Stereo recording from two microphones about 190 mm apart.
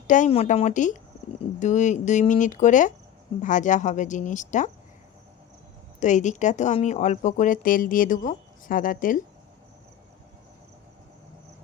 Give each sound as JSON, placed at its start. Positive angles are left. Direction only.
{"t": 0.1, "sound": "speech", "side_deg": 35}
{"t": 6.0, "sound": "speech", "side_deg": 40}